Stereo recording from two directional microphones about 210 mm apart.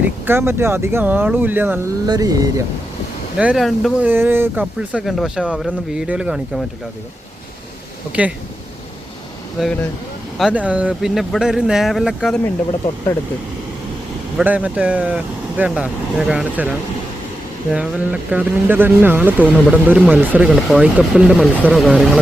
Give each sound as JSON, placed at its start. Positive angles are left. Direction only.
{"t": 0.3, "sound": "speech", "side_deg": -10}
{"t": 3.3, "sound": "speech", "side_deg": -5}
{"t": 4.1, "sound": "speech", "side_deg": -10}
{"t": 8.1, "sound": "speech", "side_deg": -5}
{"t": 9.6, "sound": "speech", "side_deg": 0}
{"t": 14.3, "sound": "speech", "side_deg": -5}